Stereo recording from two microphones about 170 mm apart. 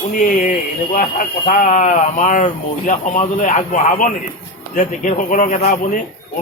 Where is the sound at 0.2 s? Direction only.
50° left (ahead or behind).